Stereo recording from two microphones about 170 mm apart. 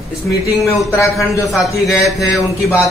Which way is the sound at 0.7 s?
15° left (ahead or behind).